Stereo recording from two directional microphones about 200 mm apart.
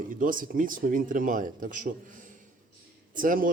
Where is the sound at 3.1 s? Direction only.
45° right (ahead or behind).